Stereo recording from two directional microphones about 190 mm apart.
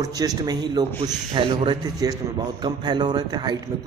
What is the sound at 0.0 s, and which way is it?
A man's voice, 20° right (ahead or behind).